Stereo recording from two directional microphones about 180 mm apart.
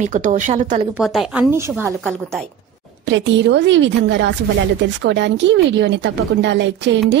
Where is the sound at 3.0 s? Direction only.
85° right.